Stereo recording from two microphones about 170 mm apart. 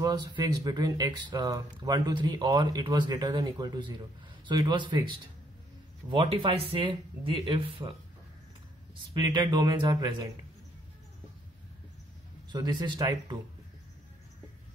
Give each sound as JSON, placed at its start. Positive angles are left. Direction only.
{"t": 0.0, "sound": "speech", "side_deg": -25}
{"t": 6.0, "sound": "speech", "side_deg": -35}
{"t": 9.1, "sound": "speech", "side_deg": -25}
{"t": 12.5, "sound": "speech", "side_deg": -25}